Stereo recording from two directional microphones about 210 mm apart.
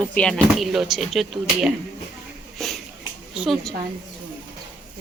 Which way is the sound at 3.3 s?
Centre (ahead or behind).